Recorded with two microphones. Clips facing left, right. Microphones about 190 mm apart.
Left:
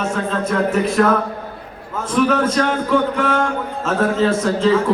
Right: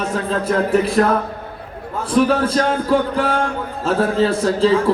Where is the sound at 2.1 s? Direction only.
35° right (ahead or behind).